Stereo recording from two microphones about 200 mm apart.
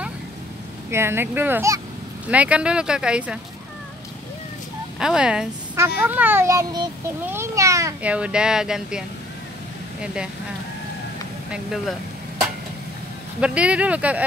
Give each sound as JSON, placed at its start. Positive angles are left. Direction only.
{"t": 0.8, "sound": "a child's voice", "side_deg": -10}
{"t": 4.9, "sound": "a woman's voice", "side_deg": -5}
{"t": 11.5, "sound": "speech", "side_deg": 0}
{"t": 13.4, "sound": "a child's voice", "side_deg": -5}